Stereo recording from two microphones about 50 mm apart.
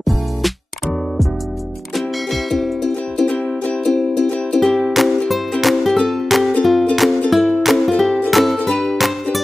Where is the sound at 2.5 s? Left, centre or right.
Centre.